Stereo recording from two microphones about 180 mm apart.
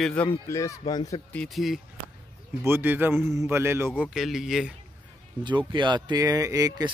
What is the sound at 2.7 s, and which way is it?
Speech, 10° right (ahead or behind).